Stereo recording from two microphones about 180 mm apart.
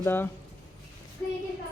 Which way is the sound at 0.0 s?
10° left (ahead or behind).